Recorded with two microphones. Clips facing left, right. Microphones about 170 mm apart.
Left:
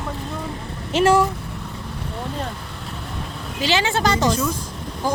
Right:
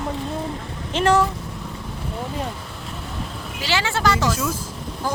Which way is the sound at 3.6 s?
20° left (ahead or behind).